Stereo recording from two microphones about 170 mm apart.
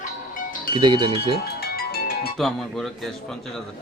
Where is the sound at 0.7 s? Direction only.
25° right (ahead or behind).